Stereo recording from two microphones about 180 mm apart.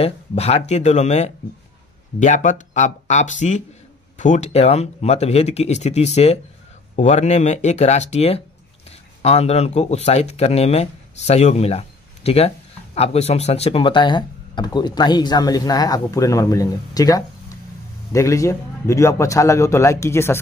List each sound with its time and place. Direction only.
0.0 s a man's voice: 35° left (ahead or behind); by 20.3 s 15° left (ahead or behind)